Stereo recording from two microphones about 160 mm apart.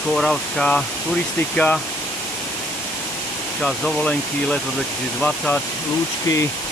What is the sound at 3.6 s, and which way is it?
Speech, 5° left (ahead or behind).